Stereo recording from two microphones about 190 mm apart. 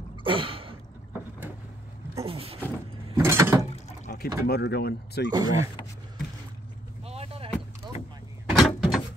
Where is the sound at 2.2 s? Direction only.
30° right (ahead or behind).